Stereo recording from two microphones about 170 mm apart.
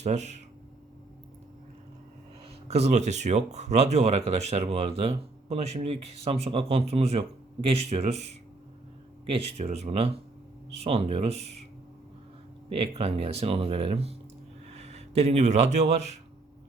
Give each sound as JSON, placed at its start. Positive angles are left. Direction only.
{"t": 0.0, "sound": "speech", "side_deg": -40}
{"t": 2.6, "sound": "speech", "side_deg": -40}
{"t": 12.6, "sound": "speech", "side_deg": -35}